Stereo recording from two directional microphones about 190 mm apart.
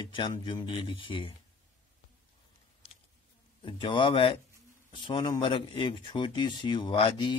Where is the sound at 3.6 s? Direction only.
25° left (ahead or behind).